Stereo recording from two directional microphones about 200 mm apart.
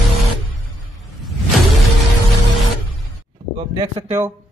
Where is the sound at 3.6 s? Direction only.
25° right (ahead or behind).